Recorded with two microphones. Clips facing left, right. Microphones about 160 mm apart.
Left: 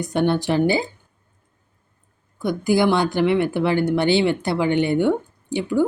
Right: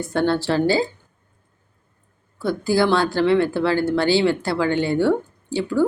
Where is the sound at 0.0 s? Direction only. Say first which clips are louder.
Even; 20° left (ahead or behind).